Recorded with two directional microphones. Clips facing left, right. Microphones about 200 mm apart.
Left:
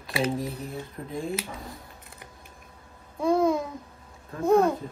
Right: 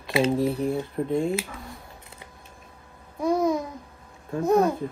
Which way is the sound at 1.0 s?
50° right (ahead or behind).